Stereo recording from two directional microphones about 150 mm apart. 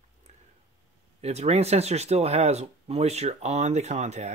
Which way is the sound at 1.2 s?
45° right (ahead or behind).